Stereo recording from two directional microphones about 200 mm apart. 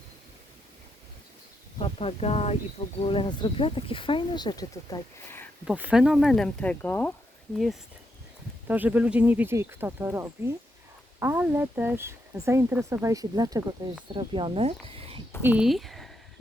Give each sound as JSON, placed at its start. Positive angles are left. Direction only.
{"t": 1.8, "sound": "speech", "side_deg": 30}
{"t": 5.6, "sound": "speech", "side_deg": -5}
{"t": 8.6, "sound": "speech", "side_deg": -10}
{"t": 15.4, "sound": "speech", "side_deg": -10}